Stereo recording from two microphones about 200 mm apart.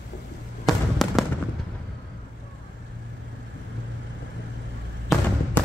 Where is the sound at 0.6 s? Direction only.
Centre (ahead or behind).